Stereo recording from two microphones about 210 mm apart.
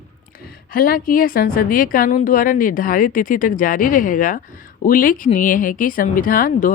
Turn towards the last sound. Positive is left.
turn(degrees=40)  # may be behind; listen again after turning